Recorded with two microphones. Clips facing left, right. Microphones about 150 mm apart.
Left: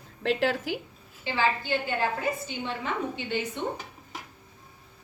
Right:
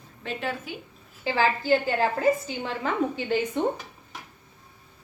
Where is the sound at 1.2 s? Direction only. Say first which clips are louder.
Right 4 dB; 40° right (ahead or behind).